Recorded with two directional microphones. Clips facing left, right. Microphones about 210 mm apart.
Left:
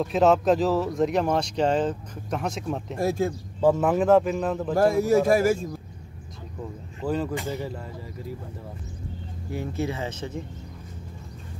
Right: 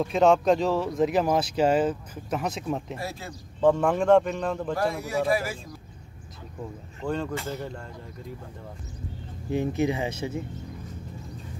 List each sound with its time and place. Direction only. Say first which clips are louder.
0.0 s speech: even; centre (ahead or behind)
3.0 s speech: left 11 dB; 50° left (ahead or behind)
3.6 s speech: left 1 dB; 5° left (ahead or behind)
5.0 s speech: left 7 dB; 45° left (ahead or behind)
7.1 s speech: left 2 dB; 5° left (ahead or behind)
9.5 s speech: right 4 dB; 20° right (ahead or behind)